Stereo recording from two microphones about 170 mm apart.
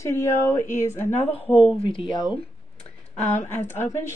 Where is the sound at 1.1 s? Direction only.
35° left (ahead or behind).